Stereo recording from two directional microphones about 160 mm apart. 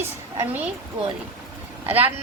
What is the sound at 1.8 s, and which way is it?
Speech, 10° right (ahead or behind).